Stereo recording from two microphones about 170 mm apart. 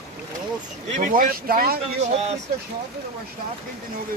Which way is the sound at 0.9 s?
55° right (ahead or behind).